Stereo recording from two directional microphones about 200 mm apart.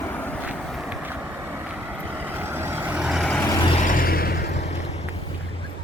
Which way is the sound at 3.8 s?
45° left (ahead or behind).